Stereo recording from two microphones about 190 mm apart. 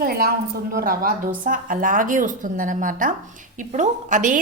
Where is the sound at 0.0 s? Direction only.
55° right (ahead or behind).